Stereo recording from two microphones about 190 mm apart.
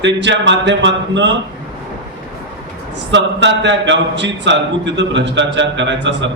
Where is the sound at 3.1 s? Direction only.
70° right (ahead or behind).